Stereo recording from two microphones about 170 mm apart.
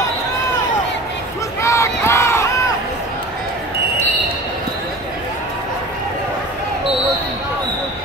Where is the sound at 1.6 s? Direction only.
15° left (ahead or behind).